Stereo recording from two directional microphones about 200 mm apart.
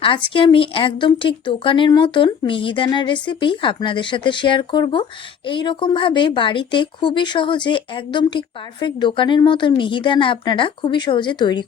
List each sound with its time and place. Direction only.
0.3 s speech: 25° left (ahead or behind)